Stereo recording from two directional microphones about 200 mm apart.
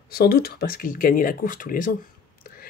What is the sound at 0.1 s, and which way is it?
Speech, 50° left (ahead or behind).